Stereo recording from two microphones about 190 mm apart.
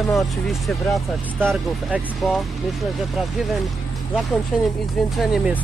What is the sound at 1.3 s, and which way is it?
Speech, 10° right (ahead or behind).